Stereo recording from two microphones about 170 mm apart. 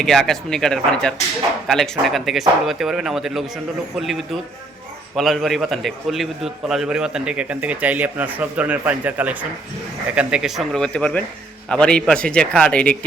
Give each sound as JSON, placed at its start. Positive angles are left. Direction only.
{"t": 0.0, "sound": "a man's voice", "side_deg": 0}